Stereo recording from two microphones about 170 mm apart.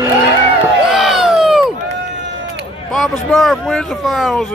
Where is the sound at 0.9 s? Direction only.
5° right (ahead or behind).